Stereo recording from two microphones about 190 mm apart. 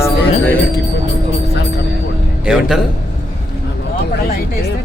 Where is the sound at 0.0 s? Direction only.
10° left (ahead or behind).